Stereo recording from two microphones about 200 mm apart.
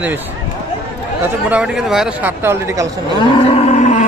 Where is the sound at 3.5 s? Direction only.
35° left (ahead or behind).